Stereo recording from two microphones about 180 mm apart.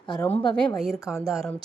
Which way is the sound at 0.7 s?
Centre (ahead or behind).